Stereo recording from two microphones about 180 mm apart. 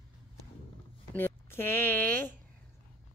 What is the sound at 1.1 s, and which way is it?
Speech, 10° left (ahead or behind).